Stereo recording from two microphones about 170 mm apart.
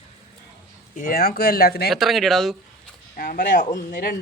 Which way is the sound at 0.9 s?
55° left (ahead or behind).